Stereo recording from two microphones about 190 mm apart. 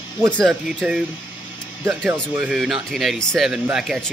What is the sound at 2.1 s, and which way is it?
Speech, 5° right (ahead or behind).